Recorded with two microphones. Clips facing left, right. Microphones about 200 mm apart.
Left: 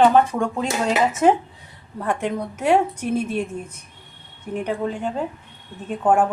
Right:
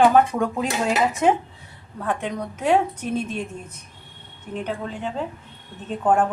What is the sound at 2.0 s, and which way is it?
A woman's voice, 10° left (ahead or behind).